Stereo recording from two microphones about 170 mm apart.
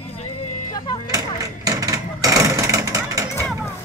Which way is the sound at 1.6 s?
20° right (ahead or behind).